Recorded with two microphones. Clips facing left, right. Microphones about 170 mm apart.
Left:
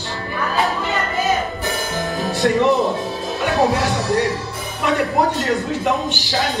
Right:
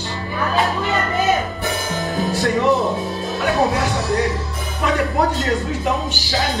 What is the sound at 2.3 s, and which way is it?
A woman's voice, centre (ahead or behind).